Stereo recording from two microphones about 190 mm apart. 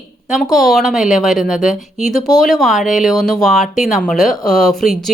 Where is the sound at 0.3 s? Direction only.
Centre (ahead or behind).